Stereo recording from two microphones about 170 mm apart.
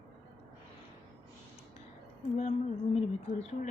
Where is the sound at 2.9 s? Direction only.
40° left (ahead or behind).